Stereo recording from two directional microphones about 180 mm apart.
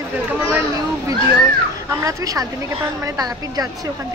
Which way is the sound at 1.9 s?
15° right (ahead or behind).